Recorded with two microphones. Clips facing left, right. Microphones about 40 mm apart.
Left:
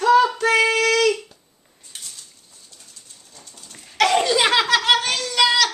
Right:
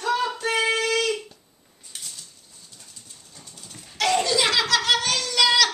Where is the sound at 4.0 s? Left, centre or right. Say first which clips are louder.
Left 5 dB; left.